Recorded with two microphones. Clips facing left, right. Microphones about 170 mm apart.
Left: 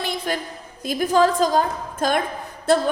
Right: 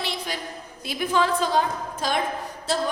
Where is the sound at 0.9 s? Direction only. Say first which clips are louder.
Left 5 dB; 45° left (ahead or behind).